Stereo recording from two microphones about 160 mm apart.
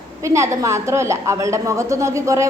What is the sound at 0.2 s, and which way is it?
A woman's voice, 20° right (ahead or behind).